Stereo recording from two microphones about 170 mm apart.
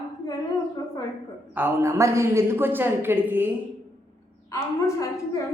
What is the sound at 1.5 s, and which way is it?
A woman's voice, 15° right (ahead or behind).